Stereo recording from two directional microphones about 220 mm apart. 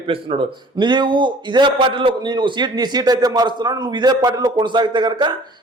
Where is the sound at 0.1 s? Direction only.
25° right (ahead or behind).